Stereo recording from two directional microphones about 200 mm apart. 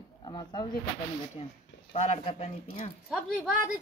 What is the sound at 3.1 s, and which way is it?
Speech, centre (ahead or behind).